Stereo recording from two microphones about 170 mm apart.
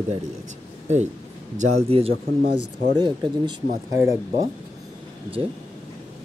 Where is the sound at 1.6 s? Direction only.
35° right (ahead or behind).